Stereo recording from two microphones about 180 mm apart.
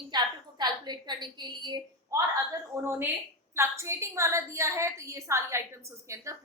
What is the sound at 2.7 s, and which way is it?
A woman's voice, 20° right (ahead or behind).